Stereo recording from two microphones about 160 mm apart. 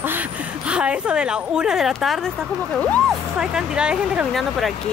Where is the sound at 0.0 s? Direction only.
10° right (ahead or behind).